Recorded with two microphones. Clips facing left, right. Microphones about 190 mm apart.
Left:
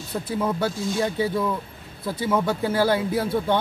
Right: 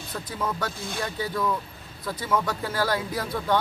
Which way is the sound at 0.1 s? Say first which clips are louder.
Left 6 dB; 30° left (ahead or behind).